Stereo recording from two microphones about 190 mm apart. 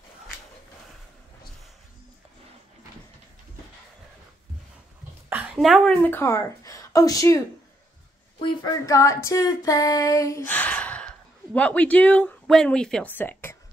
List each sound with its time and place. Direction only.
5.3 s a woman's voice: centre (ahead or behind); by 7.4 s 20° left (ahead or behind)
8.4 s female singing: 20° left (ahead or behind)